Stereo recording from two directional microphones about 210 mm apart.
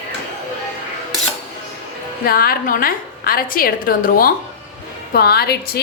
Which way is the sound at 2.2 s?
45° left (ahead or behind).